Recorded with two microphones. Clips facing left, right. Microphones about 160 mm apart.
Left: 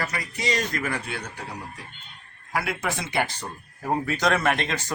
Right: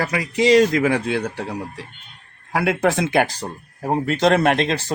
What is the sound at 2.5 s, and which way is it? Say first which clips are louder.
Speech: right 9 dB; 90° right.